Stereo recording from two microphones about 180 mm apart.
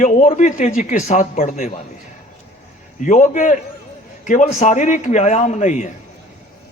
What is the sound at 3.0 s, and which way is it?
A man's voice, 45° left (ahead or behind).